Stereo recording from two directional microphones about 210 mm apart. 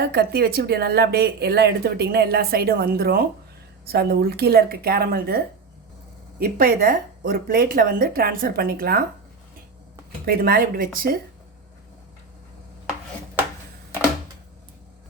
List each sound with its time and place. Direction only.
0.0 s speech: 50° right (ahead or behind)
6.4 s speech: 45° right (ahead or behind)
10.2 s speech: 45° right (ahead or behind)